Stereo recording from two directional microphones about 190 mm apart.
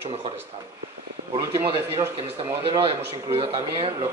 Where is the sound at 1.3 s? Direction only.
15° right (ahead or behind).